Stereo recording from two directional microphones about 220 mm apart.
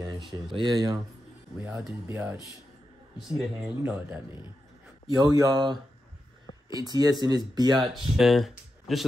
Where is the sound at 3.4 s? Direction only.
10° right (ahead or behind).